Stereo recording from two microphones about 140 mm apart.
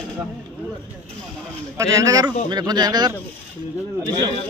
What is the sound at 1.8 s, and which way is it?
Speech, 25° right (ahead or behind).